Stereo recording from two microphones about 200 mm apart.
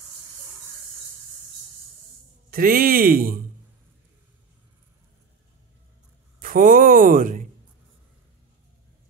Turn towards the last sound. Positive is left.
turn(degrees=-45)  # may be behind; listen again after turning